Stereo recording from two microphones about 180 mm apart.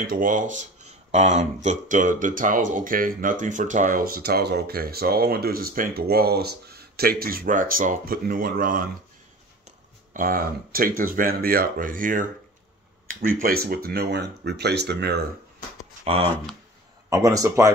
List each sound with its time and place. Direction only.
0.0 s speech: 50° right (ahead or behind)
16.0 s speech: 35° right (ahead or behind)
17.1 s speech: 20° right (ahead or behind)